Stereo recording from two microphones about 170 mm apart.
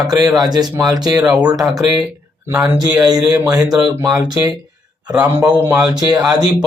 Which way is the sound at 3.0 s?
25° right (ahead or behind).